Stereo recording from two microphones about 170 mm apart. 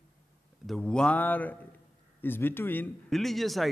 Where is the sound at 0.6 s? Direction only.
5° left (ahead or behind).